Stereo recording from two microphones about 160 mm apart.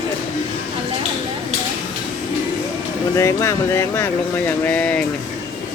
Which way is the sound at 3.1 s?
20° left (ahead or behind).